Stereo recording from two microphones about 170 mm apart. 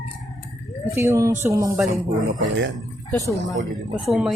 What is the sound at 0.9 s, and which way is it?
Speech, 15° right (ahead or behind).